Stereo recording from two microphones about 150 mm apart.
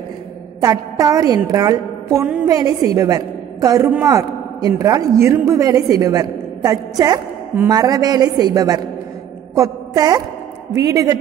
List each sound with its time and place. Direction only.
0.6 s a woman's voice: 25° right (ahead or behind)